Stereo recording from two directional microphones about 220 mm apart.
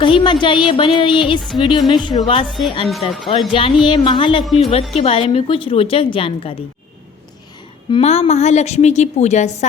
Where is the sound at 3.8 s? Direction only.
20° left (ahead or behind).